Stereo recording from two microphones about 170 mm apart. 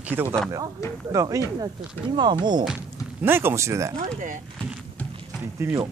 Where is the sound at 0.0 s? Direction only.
10° right (ahead or behind).